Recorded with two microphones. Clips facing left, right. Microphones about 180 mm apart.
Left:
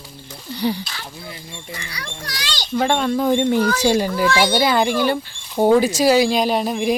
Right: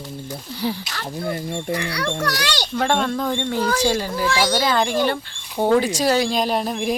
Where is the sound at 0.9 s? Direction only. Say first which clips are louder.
Right 9 dB; 45° right (ahead or behind).